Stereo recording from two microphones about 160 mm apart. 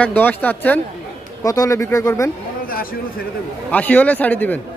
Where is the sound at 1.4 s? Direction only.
20° left (ahead or behind).